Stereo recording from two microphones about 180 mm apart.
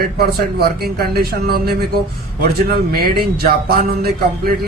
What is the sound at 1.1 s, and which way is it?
Speech, 60° right (ahead or behind).